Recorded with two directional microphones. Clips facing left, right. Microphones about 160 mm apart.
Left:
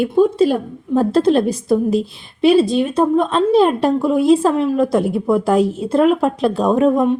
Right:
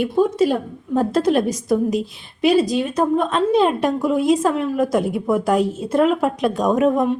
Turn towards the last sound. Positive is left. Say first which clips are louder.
# left 3 dB
turn(degrees=30)  # may be behind; listen again after turning